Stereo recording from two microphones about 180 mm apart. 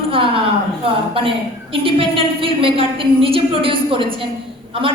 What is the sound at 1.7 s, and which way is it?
A woman's voice, 30° right (ahead or behind).